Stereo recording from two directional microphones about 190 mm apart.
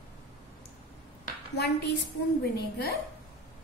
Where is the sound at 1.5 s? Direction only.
60° left (ahead or behind).